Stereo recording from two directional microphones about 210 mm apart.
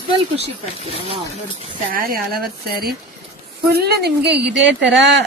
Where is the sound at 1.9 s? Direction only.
45° right (ahead or behind).